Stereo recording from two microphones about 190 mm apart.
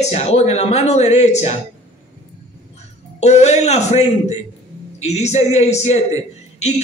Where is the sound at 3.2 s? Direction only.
35° left (ahead or behind).